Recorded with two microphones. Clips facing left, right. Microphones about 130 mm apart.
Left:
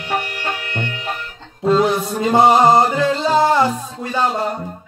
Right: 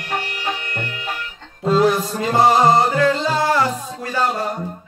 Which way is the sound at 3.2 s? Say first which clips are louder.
Left 4 dB; 20° left (ahead or behind).